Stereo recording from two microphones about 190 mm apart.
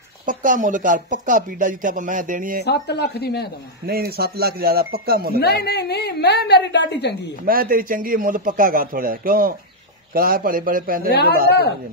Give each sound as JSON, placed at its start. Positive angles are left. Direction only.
{"t": 0.2, "sound": "speech", "side_deg": -45}
{"t": 2.6, "sound": "a woman's voice", "side_deg": 60}
{"t": 3.8, "sound": "speech", "side_deg": -55}
{"t": 5.4, "sound": "a woman's voice", "side_deg": 55}
{"t": 7.4, "sound": "speech", "side_deg": -50}
{"t": 11.1, "sound": "speech", "side_deg": 50}